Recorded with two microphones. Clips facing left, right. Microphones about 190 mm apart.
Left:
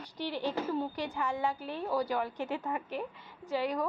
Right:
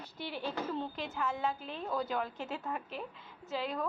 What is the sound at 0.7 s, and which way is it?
A woman's voice, 15° left (ahead or behind).